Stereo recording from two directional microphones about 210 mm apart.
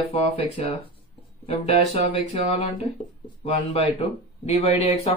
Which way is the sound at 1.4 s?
30° left (ahead or behind).